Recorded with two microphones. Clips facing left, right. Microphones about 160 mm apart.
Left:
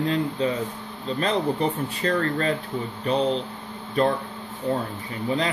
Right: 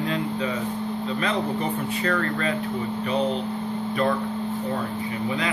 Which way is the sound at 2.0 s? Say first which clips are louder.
Left 3 dB; 35° left (ahead or behind).